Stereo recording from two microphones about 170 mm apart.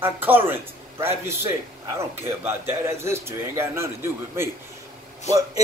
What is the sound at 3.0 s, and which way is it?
Speech, 15° right (ahead or behind).